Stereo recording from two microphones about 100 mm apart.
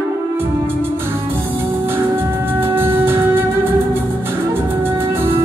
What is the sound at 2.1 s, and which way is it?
Music, 25° right (ahead or behind).